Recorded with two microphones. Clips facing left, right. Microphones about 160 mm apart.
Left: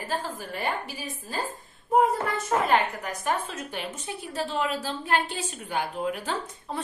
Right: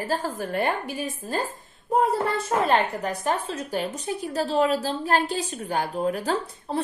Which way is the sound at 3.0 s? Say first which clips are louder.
Right 3 dB; 30° right (ahead or behind).